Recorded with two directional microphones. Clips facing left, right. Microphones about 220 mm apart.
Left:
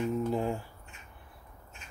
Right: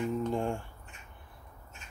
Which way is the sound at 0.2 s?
5° left (ahead or behind).